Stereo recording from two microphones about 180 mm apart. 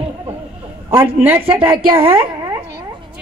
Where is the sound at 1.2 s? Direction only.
10° right (ahead or behind).